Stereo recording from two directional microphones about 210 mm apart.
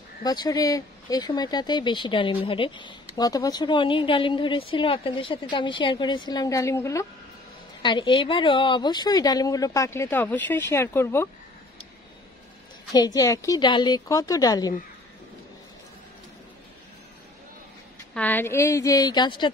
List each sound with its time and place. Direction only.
0.2 s speech: 20° left (ahead or behind)
12.9 s speech: 20° left (ahead or behind)
18.1 s speech: 10° left (ahead or behind)